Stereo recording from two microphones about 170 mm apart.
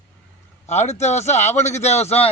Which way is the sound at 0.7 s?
40° left (ahead or behind).